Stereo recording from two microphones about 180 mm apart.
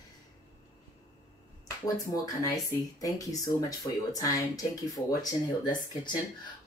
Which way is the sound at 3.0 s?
20° left (ahead or behind).